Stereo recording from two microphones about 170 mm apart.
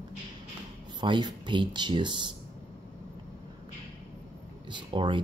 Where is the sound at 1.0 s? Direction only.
25° right (ahead or behind).